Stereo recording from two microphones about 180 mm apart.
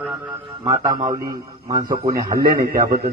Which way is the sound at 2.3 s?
55° right (ahead or behind).